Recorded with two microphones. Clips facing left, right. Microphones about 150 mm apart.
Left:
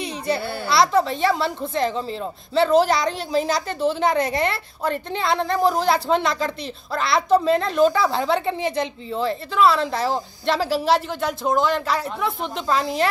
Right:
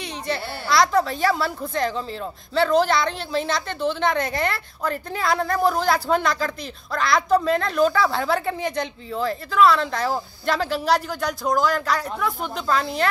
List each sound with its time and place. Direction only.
0.0 s a sound: 35° left (ahead or behind)
0.7 s a woman's voice: centre (ahead or behind)
2.7 s a woman's voice: 35° left (ahead or behind)
3.1 s a woman's voice: 5° left (ahead or behind)
3.8 s a woman's voice: 35° left (ahead or behind)
4.2 s a woman's voice: 5° left (ahead or behind)